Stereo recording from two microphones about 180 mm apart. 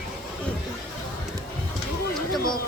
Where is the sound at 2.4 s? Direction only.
55° left (ahead or behind).